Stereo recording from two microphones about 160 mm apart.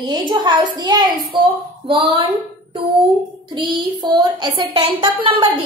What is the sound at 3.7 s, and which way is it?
Speech, 25° right (ahead or behind).